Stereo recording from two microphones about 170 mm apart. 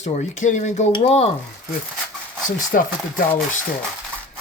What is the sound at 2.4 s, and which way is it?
Speech, 50° left (ahead or behind).